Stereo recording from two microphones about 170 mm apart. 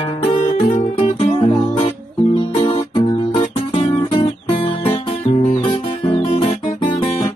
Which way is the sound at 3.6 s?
30° left (ahead or behind).